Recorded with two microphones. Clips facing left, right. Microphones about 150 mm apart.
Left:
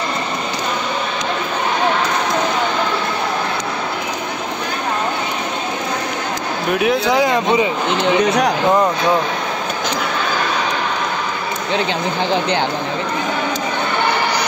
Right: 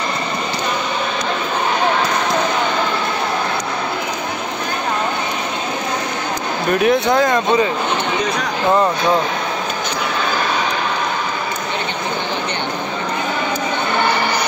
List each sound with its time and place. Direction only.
6.7 s speech: 5° left (ahead or behind)
8.0 s speech: 90° left